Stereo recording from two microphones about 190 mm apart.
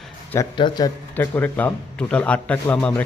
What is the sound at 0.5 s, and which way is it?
Speech, 25° left (ahead or behind).